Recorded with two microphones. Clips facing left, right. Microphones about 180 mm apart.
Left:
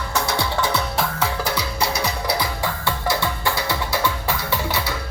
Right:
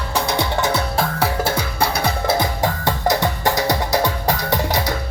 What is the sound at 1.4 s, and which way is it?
Music, 55° right (ahead or behind).